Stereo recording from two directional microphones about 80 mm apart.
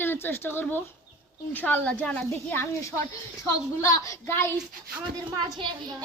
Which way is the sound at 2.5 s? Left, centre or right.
Left.